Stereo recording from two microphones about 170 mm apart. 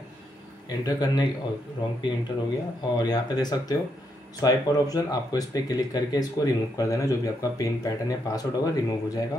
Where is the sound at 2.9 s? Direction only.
25° left (ahead or behind).